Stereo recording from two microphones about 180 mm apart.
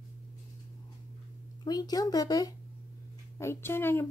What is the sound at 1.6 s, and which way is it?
A woman's voice, 20° left (ahead or behind).